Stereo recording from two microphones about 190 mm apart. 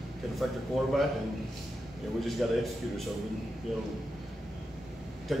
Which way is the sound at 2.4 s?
Centre (ahead or behind).